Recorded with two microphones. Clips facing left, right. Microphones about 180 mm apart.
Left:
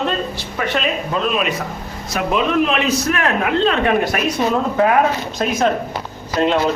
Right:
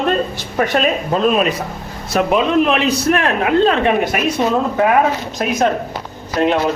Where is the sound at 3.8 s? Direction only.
20° right (ahead or behind).